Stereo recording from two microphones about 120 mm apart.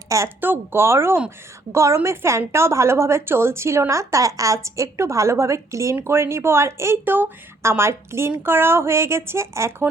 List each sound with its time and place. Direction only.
0.1 s a woman's voice: 20° right (ahead or behind)